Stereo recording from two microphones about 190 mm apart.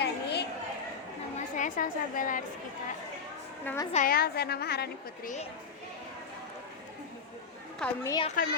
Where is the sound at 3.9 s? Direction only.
45° left (ahead or behind).